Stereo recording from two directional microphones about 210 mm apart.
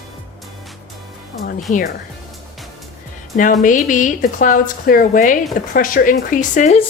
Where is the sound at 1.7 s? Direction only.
40° left (ahead or behind).